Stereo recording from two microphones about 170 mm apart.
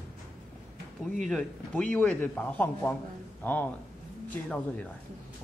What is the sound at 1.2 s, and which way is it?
A man's voice, 5° left (ahead or behind).